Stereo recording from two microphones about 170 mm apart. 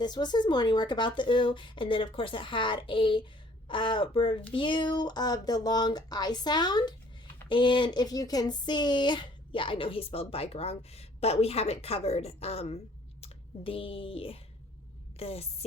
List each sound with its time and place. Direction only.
0.0 s speech: 25° left (ahead or behind)